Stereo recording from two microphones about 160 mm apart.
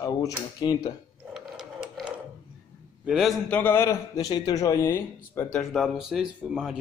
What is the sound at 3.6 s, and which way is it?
A man's voice, 15° left (ahead or behind).